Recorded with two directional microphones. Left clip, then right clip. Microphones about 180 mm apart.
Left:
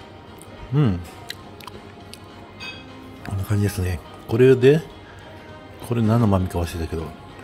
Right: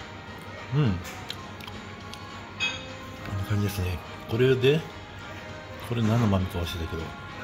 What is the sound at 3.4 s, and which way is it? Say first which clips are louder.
Speech: left 6 dB; 40° left (ahead or behind).